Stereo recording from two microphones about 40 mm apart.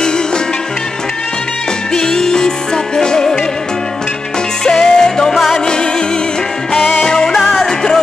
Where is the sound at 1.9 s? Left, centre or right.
Centre.